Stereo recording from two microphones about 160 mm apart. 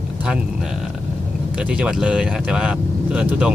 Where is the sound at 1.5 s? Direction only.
5° right (ahead or behind).